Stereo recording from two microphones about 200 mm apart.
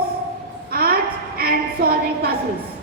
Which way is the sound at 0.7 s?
50° right (ahead or behind).